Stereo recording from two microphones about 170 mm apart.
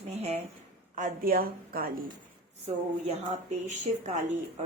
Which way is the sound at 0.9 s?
50° right (ahead or behind).